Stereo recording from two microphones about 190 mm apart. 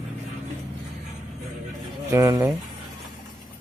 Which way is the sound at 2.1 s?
15° right (ahead or behind).